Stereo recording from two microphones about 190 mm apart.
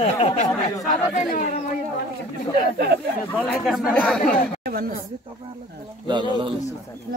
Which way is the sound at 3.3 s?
Centre (ahead or behind).